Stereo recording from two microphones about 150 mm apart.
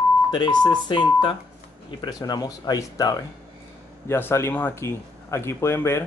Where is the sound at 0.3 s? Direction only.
30° left (ahead or behind).